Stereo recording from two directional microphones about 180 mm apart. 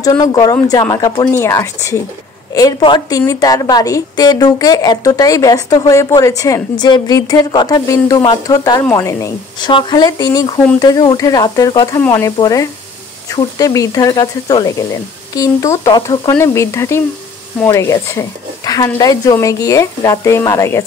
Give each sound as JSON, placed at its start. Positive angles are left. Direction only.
{"t": 0.0, "sound": "a woman's voice", "side_deg": 20}